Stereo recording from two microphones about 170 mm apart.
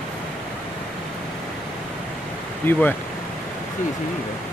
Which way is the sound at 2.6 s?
10° left (ahead or behind).